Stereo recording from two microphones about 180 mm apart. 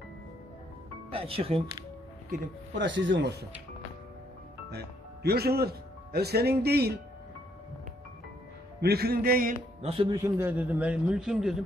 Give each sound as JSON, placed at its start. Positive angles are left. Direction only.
{"t": 1.1, "sound": "speech", "side_deg": -30}
{"t": 2.8, "sound": "speech", "side_deg": -90}
{"t": 4.6, "sound": "speech", "side_deg": -65}
{"t": 8.8, "sound": "speech", "side_deg": -60}
{"t": 9.8, "sound": "speech", "side_deg": -30}
{"t": 10.1, "sound": "a man's voice", "side_deg": -15}